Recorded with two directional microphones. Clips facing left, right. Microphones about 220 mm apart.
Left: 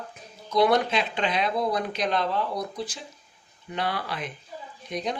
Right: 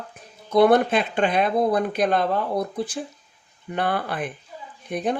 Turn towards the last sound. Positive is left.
turn(degrees=-50)  # may be behind; listen again after turning